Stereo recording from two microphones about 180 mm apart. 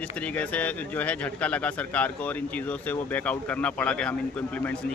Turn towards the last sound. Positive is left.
turn(degrees=5)  # may be behind; listen again after turning